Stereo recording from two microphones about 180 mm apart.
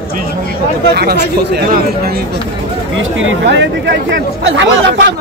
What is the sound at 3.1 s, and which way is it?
Speech, 85° right.